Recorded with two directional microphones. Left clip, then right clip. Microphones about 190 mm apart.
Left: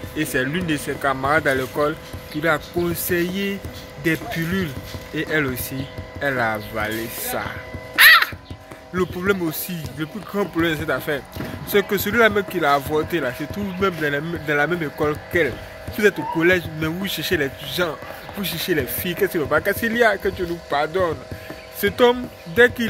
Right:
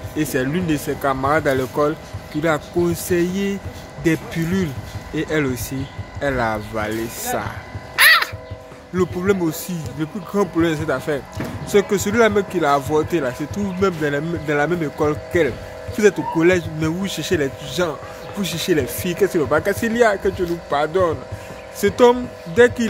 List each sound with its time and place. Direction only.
0.1 s speech: 10° right (ahead or behind)